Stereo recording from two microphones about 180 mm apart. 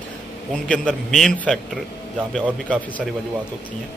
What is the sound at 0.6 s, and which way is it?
A man's voice, centre (ahead or behind).